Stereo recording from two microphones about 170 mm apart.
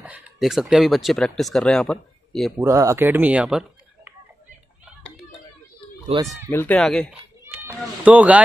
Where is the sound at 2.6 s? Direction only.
20° right (ahead or behind).